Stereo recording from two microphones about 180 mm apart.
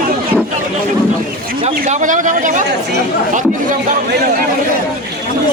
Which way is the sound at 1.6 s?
45° right (ahead or behind).